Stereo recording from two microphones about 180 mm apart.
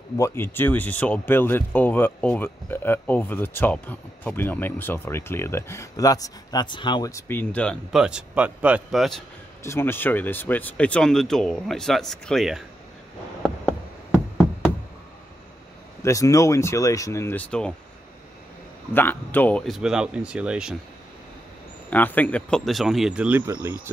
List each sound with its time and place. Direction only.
0.2 s speech: 15° left (ahead or behind)
9.6 s speech: 15° left (ahead or behind)
16.0 s speech: 15° left (ahead or behind)
18.9 s speech: 10° left (ahead or behind); by 20.7 s 5° right (ahead or behind)
21.9 s speech: 10° left (ahead or behind); by 23.8 s 15° right (ahead or behind)